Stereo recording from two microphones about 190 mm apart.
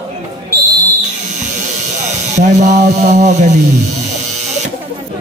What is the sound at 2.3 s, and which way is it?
Speech, 40° right (ahead or behind).